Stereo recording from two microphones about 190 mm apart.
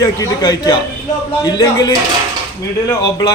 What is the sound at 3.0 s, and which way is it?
Speech, 20° left (ahead or behind).